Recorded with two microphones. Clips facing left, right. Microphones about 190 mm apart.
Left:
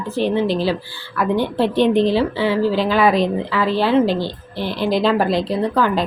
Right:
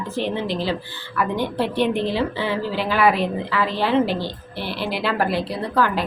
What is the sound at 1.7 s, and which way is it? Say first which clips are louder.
Speech: left 8 dB; 10° right (ahead or behind).